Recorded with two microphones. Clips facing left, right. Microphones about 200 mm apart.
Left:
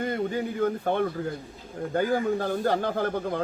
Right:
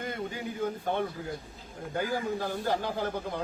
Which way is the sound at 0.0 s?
50° left (ahead or behind).